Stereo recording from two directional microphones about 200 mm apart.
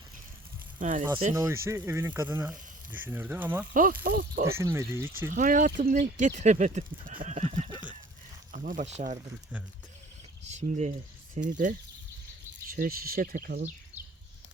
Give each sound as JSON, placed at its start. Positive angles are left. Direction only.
{"t": 0.8, "sound": "speech", "side_deg": -40}
{"t": 1.3, "sound": "speech", "side_deg": -15}
{"t": 4.0, "sound": "speech", "side_deg": -50}
{"t": 4.5, "sound": "speech", "side_deg": -15}
{"t": 5.3, "sound": "speech", "side_deg": -40}
{"t": 10.5, "sound": "speech", "side_deg": -35}